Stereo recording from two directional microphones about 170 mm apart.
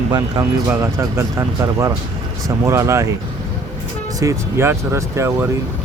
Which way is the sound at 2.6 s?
15° right (ahead or behind).